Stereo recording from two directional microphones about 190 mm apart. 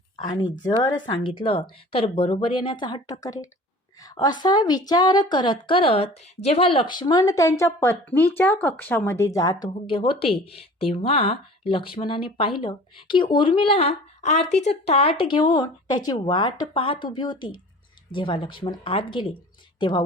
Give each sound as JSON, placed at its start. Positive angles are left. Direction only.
{"t": 0.2, "sound": "a woman's voice", "side_deg": 25}